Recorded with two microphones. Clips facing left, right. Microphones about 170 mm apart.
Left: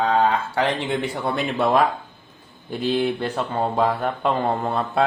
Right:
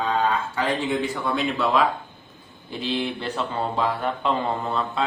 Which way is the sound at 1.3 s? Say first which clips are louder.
Left 3 dB; 55° left (ahead or behind).